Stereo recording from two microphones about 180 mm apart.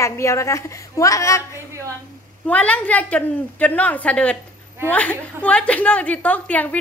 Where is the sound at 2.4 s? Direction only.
5° left (ahead or behind).